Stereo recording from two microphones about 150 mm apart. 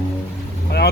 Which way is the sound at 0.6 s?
90° left.